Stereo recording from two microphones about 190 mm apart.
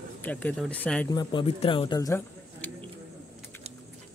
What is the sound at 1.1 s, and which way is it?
Speech, 25° left (ahead or behind).